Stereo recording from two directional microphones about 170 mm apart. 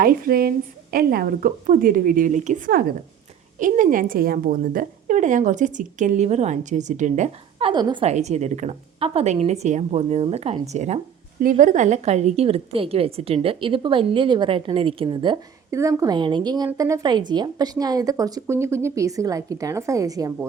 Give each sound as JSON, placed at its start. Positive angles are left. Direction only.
{"t": 0.0, "sound": "a woman's voice", "side_deg": -60}
{"t": 7.6, "sound": "a woman's voice", "side_deg": -25}
{"t": 8.0, "sound": "a woman's voice", "side_deg": -40}